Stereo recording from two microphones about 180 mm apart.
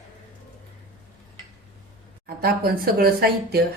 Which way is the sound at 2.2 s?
55° right (ahead or behind).